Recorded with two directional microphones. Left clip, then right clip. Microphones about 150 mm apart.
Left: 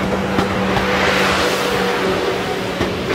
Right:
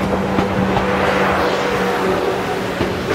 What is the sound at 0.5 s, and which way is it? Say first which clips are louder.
Vehicle: even; 25° left (ahead or behind).